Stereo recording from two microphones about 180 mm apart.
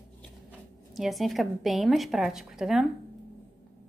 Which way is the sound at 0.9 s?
Centre (ahead or behind).